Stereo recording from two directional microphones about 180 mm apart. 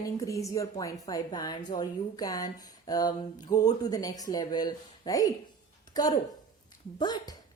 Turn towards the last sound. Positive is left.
turn(degrees=25)  # may be behind; listen again after turning